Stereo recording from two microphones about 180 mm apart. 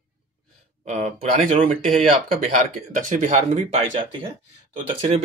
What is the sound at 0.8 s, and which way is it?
Speech, 40° right (ahead or behind).